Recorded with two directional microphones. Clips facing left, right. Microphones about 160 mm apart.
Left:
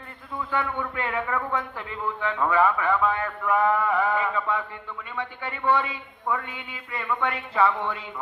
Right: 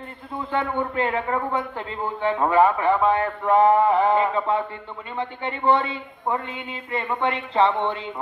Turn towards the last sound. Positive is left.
turn(degrees=-25)  # may be behind; listen again after turning